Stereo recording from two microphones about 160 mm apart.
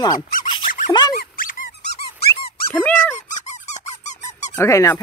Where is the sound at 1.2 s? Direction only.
60° left (ahead or behind).